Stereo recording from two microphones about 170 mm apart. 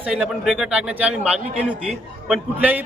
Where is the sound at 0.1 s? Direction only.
5° right (ahead or behind).